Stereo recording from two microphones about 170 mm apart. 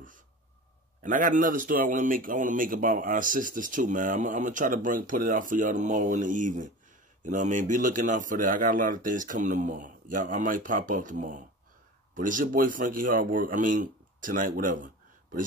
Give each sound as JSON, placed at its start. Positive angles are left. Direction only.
{"t": 1.0, "sound": "speech", "side_deg": -50}